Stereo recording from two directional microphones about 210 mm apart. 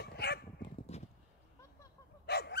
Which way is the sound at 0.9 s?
30° left (ahead or behind).